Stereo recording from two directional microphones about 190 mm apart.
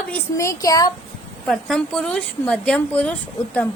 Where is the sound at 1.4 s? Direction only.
Centre (ahead or behind).